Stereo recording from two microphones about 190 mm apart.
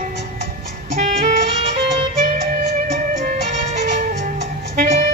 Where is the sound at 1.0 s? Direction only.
40° right (ahead or behind).